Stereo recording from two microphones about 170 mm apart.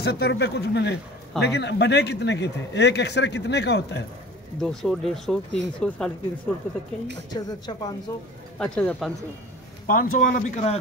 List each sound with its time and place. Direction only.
0.0 s speech: 70° left (ahead or behind)
4.6 s speech: centre (ahead or behind)
7.2 s speech: 25° left (ahead or behind)
8.5 s speech: 5° left (ahead or behind)
9.8 s speech: 50° left (ahead or behind)